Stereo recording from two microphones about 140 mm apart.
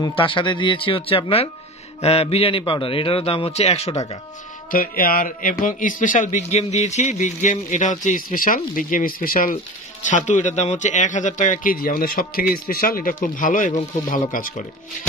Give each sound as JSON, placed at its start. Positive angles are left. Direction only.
{"t": 0.0, "sound": "a man's voice", "side_deg": 35}
{"t": 4.6, "sound": "speech", "side_deg": 85}
{"t": 10.0, "sound": "speech", "side_deg": 60}